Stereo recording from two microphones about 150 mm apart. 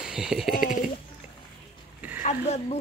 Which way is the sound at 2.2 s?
50° left (ahead or behind).